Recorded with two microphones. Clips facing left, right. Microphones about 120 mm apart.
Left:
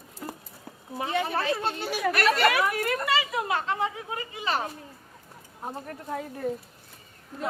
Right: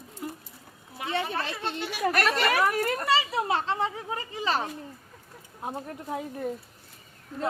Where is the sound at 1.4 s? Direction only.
40° left (ahead or behind).